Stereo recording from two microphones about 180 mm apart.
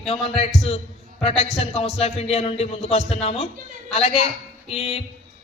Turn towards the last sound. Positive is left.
turn(degrees=30)  # may be behind; listen again after turning